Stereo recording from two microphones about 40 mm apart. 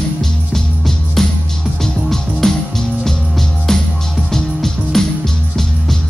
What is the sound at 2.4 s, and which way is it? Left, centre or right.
Music, centre.